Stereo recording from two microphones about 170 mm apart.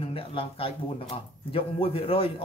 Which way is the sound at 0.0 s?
35° left (ahead or behind).